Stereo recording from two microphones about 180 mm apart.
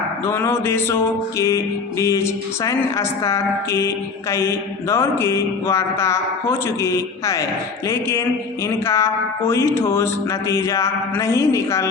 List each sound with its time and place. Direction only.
0.3 s speech: 15° left (ahead or behind)
8.6 s speech: 15° left (ahead or behind)